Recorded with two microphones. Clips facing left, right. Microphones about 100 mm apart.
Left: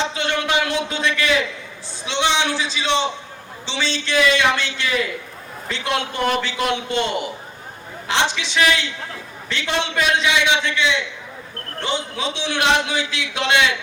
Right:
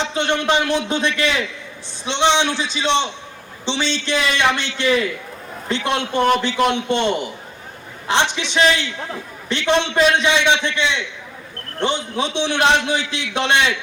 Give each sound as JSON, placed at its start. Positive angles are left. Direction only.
{"t": 0.0, "sound": "a man's voice", "side_deg": -20}